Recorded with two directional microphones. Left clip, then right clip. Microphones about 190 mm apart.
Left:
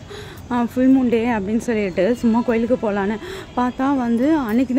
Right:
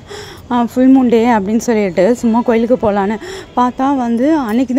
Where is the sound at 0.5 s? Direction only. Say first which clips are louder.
Right 6 dB; 25° right (ahead or behind).